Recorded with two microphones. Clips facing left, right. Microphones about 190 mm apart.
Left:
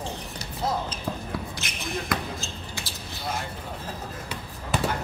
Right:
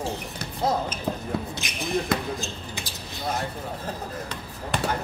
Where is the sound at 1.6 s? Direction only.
15° right (ahead or behind).